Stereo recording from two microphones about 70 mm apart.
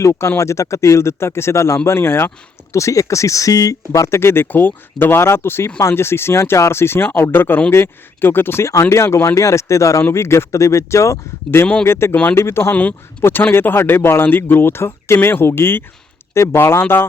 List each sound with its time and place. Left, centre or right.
0.0 s speech: left
2.7 s speech: left